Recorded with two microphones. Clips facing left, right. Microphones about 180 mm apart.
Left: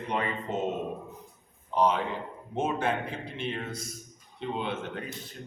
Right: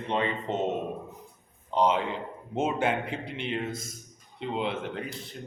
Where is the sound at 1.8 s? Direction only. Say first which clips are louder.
Right 1 dB; 25° right (ahead or behind).